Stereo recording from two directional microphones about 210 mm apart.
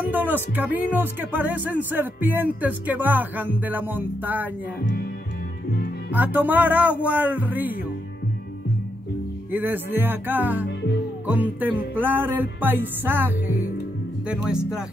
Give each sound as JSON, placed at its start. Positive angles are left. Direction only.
{"t": 0.1, "sound": "speech", "side_deg": -10}
{"t": 5.7, "sound": "music", "side_deg": 50}
{"t": 6.1, "sound": "speech", "side_deg": -10}
{"t": 9.5, "sound": "speech", "side_deg": -10}